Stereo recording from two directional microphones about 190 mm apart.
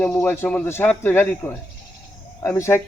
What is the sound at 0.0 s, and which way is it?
Speech, 5° left (ahead or behind).